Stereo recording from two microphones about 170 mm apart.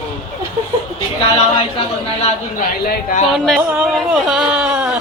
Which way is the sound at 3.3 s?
Centre (ahead or behind).